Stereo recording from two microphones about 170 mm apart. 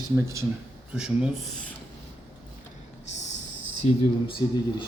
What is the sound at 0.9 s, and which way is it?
Speech, 5° right (ahead or behind).